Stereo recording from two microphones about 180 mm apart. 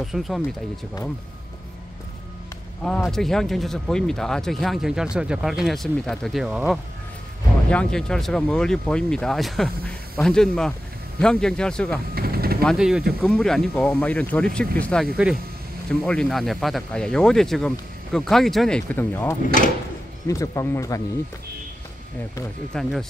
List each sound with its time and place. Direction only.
0.0 s speech: centre (ahead or behind)
2.8 s speech: centre (ahead or behind)
12.2 s vehicle: 55° right (ahead or behind)
12.6 s speech: centre (ahead or behind); by 21.0 s 15° left (ahead or behind)
22.8 s speech: centre (ahead or behind)